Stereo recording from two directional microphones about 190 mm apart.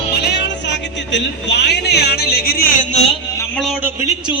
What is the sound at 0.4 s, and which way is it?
Speech, 65° left (ahead or behind).